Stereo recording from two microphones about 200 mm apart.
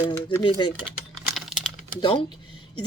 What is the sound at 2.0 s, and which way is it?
Speech, 25° left (ahead or behind).